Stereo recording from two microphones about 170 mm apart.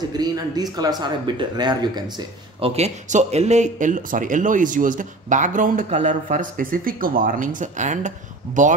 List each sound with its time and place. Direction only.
0.2 s speech: 25° right (ahead or behind)
2.7 s speech: 40° right (ahead or behind)